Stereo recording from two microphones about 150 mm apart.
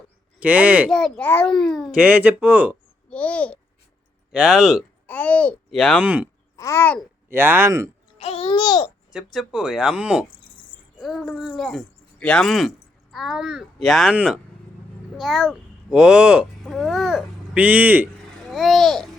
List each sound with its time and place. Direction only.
0.3 s speech: 10° right (ahead or behind)
0.9 s speech: 5° left (ahead or behind)
2.0 s speech: 10° right (ahead or behind)
3.1 s babbling: 10° left (ahead or behind)
4.3 s speech: 5° right (ahead or behind)
5.0 s a child's voice: 10° left (ahead or behind)
6.6 s babbling: 20° left (ahead or behind)
7.3 s speech: 15° right (ahead or behind)
8.2 s speech: 40° left (ahead or behind)
9.1 s a child's voice: centre (ahead or behind)
18.4 s babbling: centre (ahead or behind)